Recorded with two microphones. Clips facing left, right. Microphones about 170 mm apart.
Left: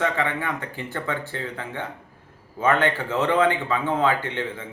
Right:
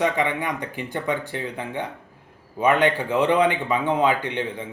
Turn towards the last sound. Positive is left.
turn(degrees=-15)  # may be behind; listen again after turning